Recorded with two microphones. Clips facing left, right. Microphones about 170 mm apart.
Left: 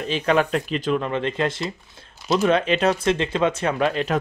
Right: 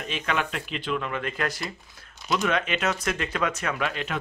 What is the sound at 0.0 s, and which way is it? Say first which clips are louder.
Speech: left 8 dB; 35° left (ahead or behind).